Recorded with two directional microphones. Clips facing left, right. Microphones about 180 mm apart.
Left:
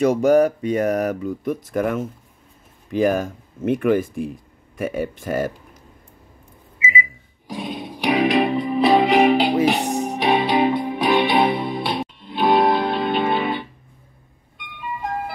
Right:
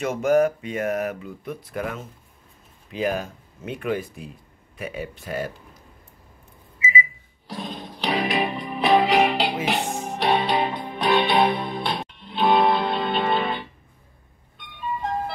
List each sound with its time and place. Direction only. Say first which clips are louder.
0.0 s speech: left 5 dB; 35° left (ahead or behind)
7.4 s music: left 4 dB; 10° left (ahead or behind)
8.3 s music: left 7 dB; centre (ahead or behind)
9.7 s music: left 5 dB; 15° left (ahead or behind)